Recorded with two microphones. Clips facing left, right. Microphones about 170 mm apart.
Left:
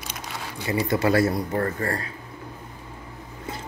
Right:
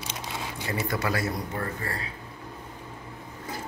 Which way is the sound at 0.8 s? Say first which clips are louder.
Left 9 dB; 25° left (ahead or behind).